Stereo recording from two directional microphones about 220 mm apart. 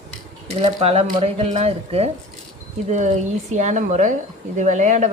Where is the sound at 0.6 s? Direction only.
25° right (ahead or behind).